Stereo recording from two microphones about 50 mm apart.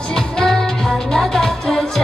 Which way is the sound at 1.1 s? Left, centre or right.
Centre.